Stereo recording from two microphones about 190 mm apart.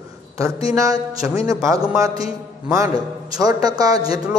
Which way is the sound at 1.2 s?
15° right (ahead or behind).